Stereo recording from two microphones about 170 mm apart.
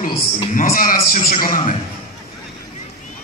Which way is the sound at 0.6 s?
55° left (ahead or behind).